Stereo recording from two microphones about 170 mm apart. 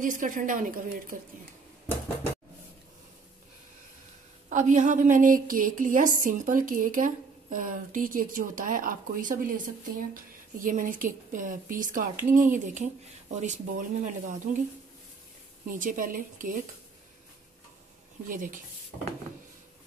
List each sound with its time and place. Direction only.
0.0 s a woman's voice: 50° right (ahead or behind)
4.5 s a woman's voice: 45° right (ahead or behind)
15.7 s a woman's voice: 50° right (ahead or behind)
18.3 s a woman's voice: 50° right (ahead or behind)